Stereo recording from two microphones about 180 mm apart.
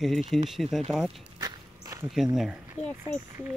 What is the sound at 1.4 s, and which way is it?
Walk, 20° right (ahead or behind).